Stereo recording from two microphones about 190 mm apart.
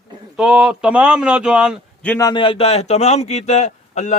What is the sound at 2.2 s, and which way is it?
A man's voice, 25° left (ahead or behind).